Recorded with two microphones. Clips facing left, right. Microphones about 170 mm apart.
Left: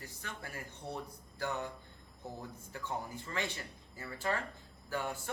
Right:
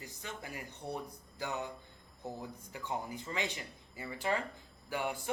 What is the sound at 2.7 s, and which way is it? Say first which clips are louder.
Speech: right 1 dB; 15° right (ahead or behind).